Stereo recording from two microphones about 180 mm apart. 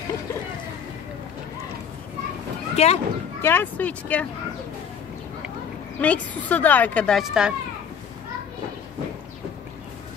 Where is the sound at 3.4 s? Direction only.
10° left (ahead or behind).